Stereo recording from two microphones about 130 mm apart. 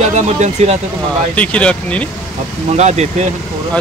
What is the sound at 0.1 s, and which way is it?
Speech, 60° right (ahead or behind).